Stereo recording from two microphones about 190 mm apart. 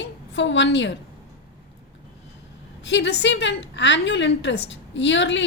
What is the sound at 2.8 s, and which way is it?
A woman's voice, 70° left (ahead or behind).